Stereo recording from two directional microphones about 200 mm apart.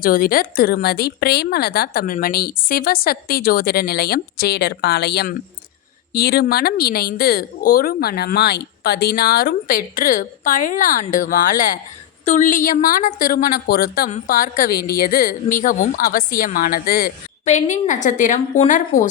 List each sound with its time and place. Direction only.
0.0 s a woman's voice: 45° left (ahead or behind)